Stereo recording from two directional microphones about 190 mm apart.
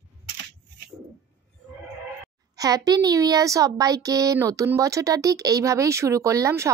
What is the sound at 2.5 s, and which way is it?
A child's voice, 20° right (ahead or behind).